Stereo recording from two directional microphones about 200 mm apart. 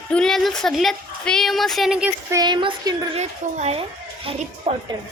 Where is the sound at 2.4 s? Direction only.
25° right (ahead or behind).